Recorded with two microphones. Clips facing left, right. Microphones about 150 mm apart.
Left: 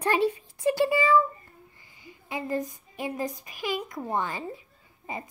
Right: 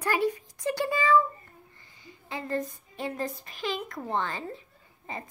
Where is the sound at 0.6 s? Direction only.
15° left (ahead or behind).